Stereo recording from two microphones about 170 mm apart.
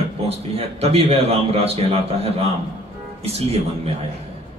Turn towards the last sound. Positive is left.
turn(degrees=-35)  # may be behind; listen again after turning